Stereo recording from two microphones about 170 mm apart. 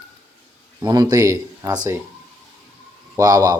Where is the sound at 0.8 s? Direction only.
20° right (ahead or behind).